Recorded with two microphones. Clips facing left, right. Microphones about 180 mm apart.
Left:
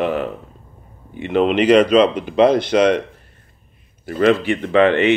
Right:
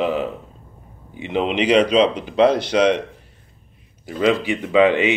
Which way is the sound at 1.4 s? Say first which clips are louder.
Left 4 dB; 55° left (ahead or behind).